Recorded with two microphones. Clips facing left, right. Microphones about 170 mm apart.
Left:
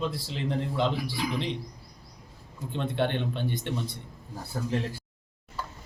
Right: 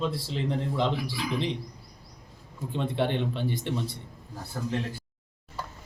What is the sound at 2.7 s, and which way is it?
Speech, centre (ahead or behind).